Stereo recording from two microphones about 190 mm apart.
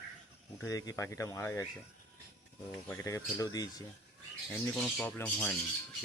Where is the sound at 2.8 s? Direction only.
15° left (ahead or behind).